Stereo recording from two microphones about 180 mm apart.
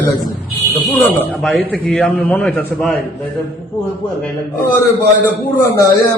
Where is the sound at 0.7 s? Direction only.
10° left (ahead or behind).